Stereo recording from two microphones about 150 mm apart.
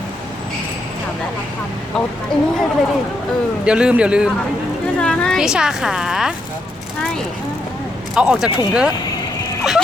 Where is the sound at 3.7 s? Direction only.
5° right (ahead or behind).